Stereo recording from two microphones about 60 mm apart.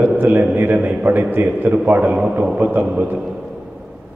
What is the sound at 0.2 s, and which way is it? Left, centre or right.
A man's voice, right.